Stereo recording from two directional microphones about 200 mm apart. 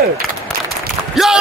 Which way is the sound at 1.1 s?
Centre (ahead or behind).